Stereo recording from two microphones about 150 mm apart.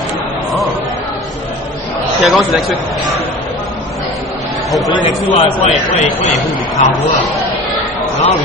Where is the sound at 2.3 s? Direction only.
Centre (ahead or behind).